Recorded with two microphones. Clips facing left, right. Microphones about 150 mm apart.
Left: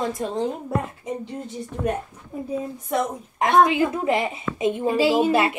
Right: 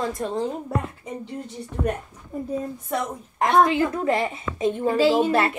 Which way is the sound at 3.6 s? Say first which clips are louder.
Left 2 dB; 15° left (ahead or behind).